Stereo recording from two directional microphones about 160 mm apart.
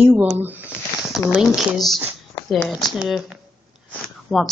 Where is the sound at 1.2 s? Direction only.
Centre (ahead or behind).